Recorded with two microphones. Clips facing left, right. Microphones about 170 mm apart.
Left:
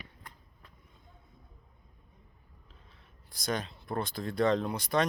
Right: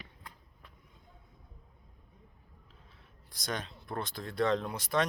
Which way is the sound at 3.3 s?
Centre (ahead or behind).